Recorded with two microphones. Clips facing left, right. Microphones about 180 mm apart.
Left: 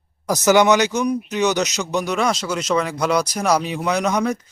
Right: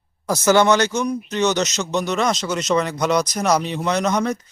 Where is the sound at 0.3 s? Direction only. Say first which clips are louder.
Left 1 dB; 15° left (ahead or behind).